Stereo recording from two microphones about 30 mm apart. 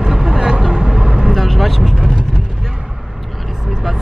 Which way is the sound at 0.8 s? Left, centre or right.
Right.